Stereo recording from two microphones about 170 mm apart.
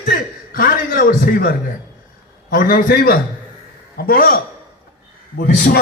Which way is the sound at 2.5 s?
60° left (ahead or behind).